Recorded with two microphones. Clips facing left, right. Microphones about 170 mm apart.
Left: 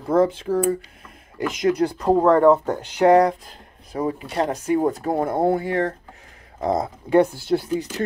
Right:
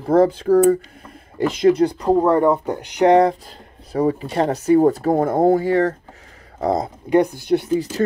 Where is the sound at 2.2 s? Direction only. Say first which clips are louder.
Left 1 dB; 15° right (ahead or behind).